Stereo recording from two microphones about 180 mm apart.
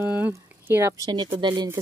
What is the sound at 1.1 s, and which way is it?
Speech, 25° right (ahead or behind).